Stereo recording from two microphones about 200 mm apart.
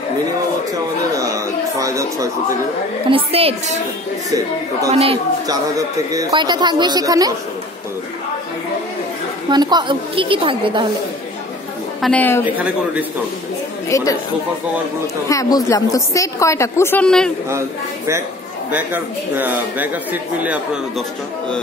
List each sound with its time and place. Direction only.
1.1 s a sound: 15° right (ahead or behind)
3.1 s a woman's voice: 30° right (ahead or behind)
4.9 s a woman's voice: 30° right (ahead or behind)
9.5 s a woman's voice: 20° right (ahead or behind)
12.0 s a woman's voice: 5° left (ahead or behind)
12.5 s speech: 5° right (ahead or behind)
13.8 s a woman's voice: 15° left (ahead or behind)
15.2 s a woman's voice: 15° left (ahead or behind)
17.5 s speech: 15° right (ahead or behind)